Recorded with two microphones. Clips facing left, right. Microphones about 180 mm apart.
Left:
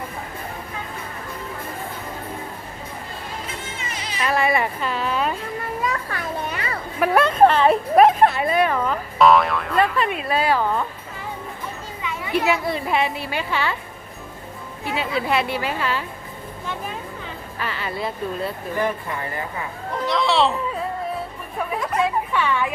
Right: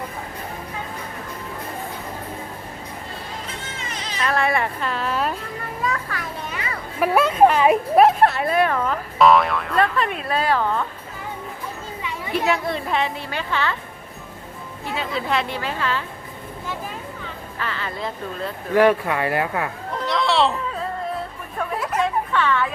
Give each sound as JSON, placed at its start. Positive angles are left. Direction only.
{"t": 3.8, "sound": "speech", "side_deg": 10}
{"t": 7.0, "sound": "a woman's voice", "side_deg": -5}
{"t": 12.3, "sound": "a woman's voice", "side_deg": 0}
{"t": 14.8, "sound": "a woman's voice", "side_deg": 10}
{"t": 17.6, "sound": "a woman's voice", "side_deg": 15}
{"t": 18.7, "sound": "speech", "side_deg": -80}
{"t": 19.9, "sound": "a woman's voice", "side_deg": 0}
{"t": 22.0, "sound": "speech", "side_deg": 10}